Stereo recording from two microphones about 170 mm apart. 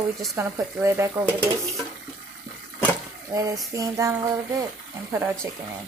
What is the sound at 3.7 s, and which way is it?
Speech, 20° right (ahead or behind).